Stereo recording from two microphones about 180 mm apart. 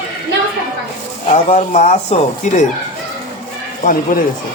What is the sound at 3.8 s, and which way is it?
Speech, 55° left (ahead or behind).